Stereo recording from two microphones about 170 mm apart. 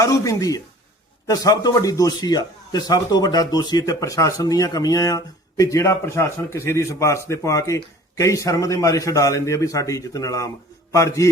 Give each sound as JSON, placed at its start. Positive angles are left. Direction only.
{"t": 0.0, "sound": "a man's voice", "side_deg": 20}